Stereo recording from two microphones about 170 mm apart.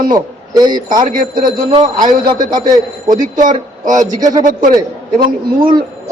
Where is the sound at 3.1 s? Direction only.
50° right (ahead or behind).